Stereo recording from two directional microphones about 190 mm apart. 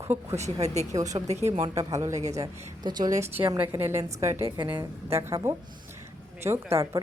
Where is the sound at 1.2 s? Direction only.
35° right (ahead or behind).